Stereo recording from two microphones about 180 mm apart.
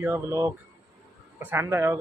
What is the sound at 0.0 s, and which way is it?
Speech, 15° right (ahead or behind).